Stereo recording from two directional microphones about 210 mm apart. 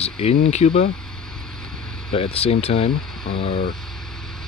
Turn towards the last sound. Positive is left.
turn(degrees=0)  # may be behind; listen again after turning